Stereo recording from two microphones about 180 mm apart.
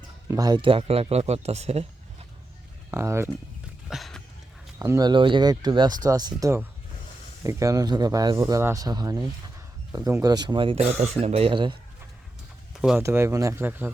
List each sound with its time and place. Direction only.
0.3 s speech: 20° right (ahead or behind)
2.9 s speech: 15° right (ahead or behind)
3.8 s a sound: centre (ahead or behind)
4.8 s speech: 20° right (ahead or behind)
12.7 s bird: 5° right (ahead or behind)
13.0 s speech: 15° right (ahead or behind)